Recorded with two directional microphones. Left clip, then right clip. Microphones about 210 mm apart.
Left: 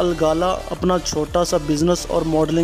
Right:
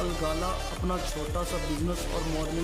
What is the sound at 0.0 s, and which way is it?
A man's voice, 40° left (ahead or behind).